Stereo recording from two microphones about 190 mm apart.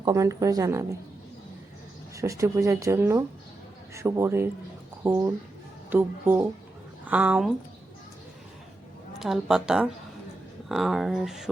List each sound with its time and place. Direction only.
0.0 s speech: 15° right (ahead or behind)
2.1 s speech: 15° right (ahead or behind)
9.1 s speech: centre (ahead or behind)